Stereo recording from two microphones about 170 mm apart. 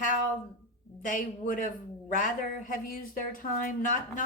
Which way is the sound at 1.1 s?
50° left (ahead or behind).